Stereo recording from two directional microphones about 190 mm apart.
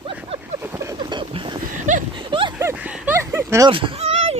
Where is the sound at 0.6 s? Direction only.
15° right (ahead or behind).